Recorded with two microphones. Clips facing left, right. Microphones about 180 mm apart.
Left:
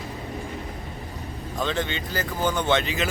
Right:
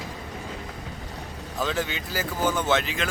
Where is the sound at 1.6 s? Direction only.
5° right (ahead or behind).